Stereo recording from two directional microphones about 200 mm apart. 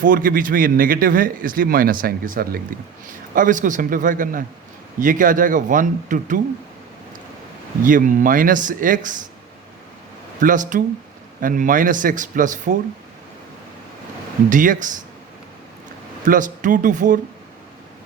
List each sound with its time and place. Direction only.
0.0 s a man's voice: 45° right (ahead or behind)
7.9 s speech: 40° right (ahead or behind)
10.4 s speech: 40° right (ahead or behind)
14.5 s speech: 40° right (ahead or behind)
16.2 s speech: 40° right (ahead or behind)